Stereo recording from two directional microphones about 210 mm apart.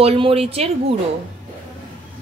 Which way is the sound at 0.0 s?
25° right (ahead or behind).